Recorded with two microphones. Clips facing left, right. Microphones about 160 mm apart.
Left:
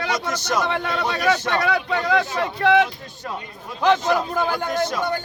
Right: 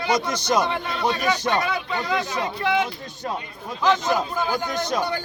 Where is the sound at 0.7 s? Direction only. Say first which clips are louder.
Left 1 dB; 70° left (ahead or behind).